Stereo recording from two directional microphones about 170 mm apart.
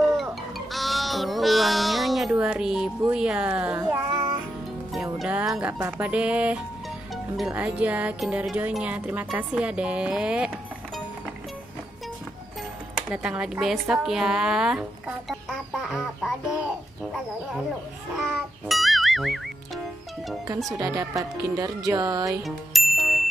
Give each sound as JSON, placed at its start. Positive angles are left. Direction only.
{"t": 0.7, "sound": "speech", "side_deg": 0}
{"t": 5.2, "sound": "music", "side_deg": -5}
{"t": 7.3, "sound": "speech", "side_deg": -5}
{"t": 13.1, "sound": "speech", "side_deg": -5}
{"t": 18.1, "sound": "music", "side_deg": -5}
{"t": 20.7, "sound": "speech", "side_deg": -20}
{"t": 22.4, "sound": "bicycle bell", "side_deg": 0}